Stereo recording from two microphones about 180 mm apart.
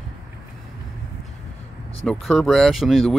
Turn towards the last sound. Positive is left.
turn(degrees=0)  # may be behind; listen again after turning